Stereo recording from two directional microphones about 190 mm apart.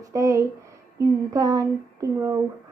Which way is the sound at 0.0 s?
15° right (ahead or behind).